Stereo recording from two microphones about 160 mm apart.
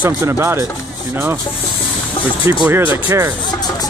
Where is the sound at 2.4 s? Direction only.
15° right (ahead or behind).